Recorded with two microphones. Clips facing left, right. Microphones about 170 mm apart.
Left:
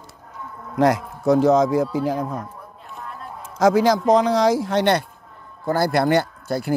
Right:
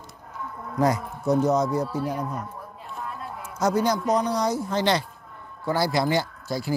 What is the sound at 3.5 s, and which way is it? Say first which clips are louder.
Speech: left 7 dB; 90° left.